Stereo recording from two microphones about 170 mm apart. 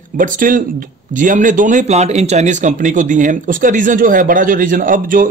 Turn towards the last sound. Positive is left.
turn(degrees=-50)  # may be behind; listen again after turning